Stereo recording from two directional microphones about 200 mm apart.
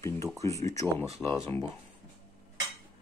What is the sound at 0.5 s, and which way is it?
Speech, 15° left (ahead or behind).